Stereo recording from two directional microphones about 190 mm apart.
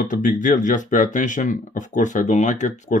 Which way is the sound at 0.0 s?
45° left (ahead or behind).